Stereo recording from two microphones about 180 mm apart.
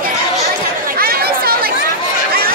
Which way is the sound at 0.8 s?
55° right (ahead or behind).